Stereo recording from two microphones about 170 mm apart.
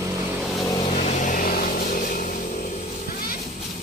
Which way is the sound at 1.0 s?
45° left (ahead or behind).